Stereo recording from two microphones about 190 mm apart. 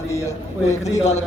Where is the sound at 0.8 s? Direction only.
35° left (ahead or behind).